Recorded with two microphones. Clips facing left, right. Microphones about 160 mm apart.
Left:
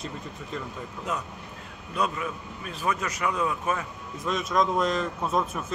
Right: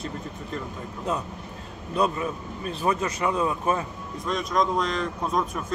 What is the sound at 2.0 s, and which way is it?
Speech, 30° right (ahead or behind).